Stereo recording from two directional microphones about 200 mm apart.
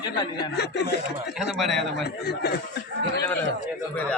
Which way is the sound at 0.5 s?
55° left (ahead or behind).